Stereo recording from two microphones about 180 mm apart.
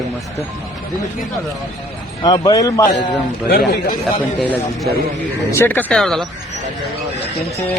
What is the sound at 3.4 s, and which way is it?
Speech, 70° left (ahead or behind).